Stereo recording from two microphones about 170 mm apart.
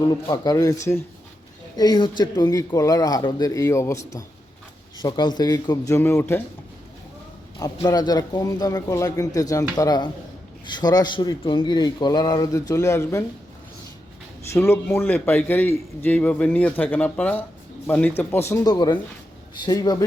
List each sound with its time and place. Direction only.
0.0 s a man's voice: 25° left (ahead or behind)
7.8 s a man's voice: 25° left (ahead or behind)
14.5 s speech: 15° left (ahead or behind)
18.7 s a man's voice: 25° left (ahead or behind)